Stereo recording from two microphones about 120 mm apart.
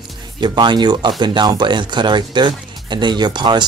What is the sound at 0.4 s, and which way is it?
Speech, 40° right (ahead or behind).